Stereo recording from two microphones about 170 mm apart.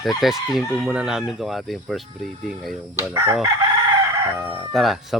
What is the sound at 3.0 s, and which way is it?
Chicken, 15° right (ahead or behind).